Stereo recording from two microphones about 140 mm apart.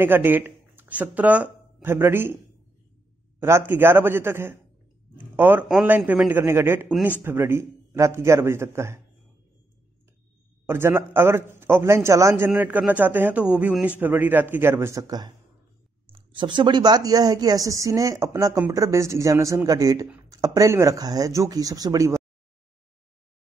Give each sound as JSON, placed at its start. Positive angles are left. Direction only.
{"t": 0.0, "sound": "speech", "side_deg": -15}
{"t": 3.3, "sound": "a man's voice", "side_deg": -20}
{"t": 10.7, "sound": "a man's voice", "side_deg": -15}